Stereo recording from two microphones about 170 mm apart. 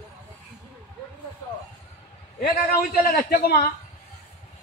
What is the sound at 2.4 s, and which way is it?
A man's voice, 65° left (ahead or behind).